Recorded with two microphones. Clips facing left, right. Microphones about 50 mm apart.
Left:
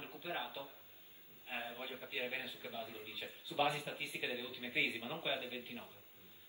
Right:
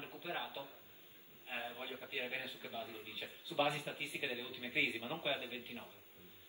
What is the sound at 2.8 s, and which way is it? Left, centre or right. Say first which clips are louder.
Speech: even; right.